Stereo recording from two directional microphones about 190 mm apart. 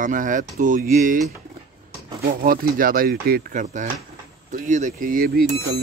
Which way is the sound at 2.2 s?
50° right (ahead or behind).